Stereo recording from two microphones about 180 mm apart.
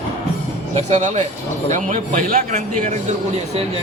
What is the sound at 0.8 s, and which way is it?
A man's voice, 40° right (ahead or behind).